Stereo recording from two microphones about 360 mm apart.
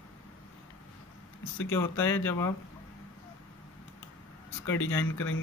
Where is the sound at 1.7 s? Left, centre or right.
Centre.